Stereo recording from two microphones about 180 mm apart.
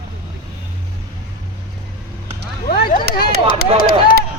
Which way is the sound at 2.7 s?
55° left (ahead or behind).